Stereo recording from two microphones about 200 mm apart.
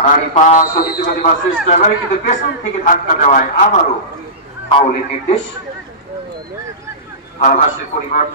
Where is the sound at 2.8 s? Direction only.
40° left (ahead or behind).